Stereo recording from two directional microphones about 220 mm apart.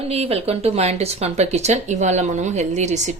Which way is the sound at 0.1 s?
25° right (ahead or behind).